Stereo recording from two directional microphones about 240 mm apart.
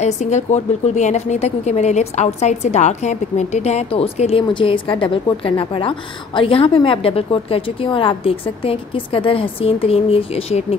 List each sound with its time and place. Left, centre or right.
0.0 s a woman's voice: left